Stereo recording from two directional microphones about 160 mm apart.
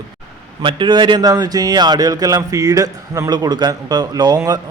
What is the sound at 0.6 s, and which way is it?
Speech, 30° right (ahead or behind).